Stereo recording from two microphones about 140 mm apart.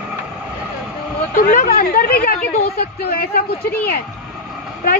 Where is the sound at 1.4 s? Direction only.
85° left.